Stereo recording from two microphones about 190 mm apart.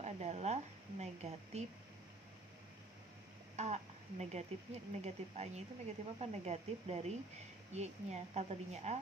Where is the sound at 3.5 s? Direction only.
35° right (ahead or behind).